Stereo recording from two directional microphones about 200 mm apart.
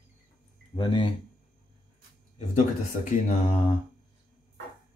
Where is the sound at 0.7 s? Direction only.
25° left (ahead or behind).